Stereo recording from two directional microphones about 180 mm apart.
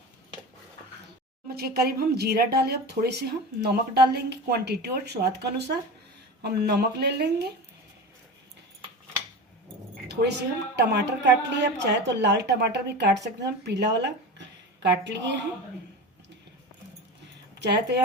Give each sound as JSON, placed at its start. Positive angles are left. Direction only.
{"t": 1.5, "sound": "a woman's voice", "side_deg": -60}
{"t": 10.8, "sound": "speech", "side_deg": -70}
{"t": 17.6, "sound": "speech", "side_deg": -70}